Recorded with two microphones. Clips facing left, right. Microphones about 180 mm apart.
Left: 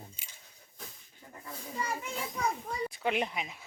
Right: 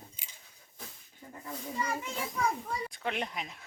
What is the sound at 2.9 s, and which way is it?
Speech, 5° left (ahead or behind).